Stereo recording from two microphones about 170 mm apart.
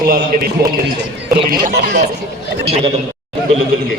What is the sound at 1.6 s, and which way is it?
Speech, 70° right (ahead or behind).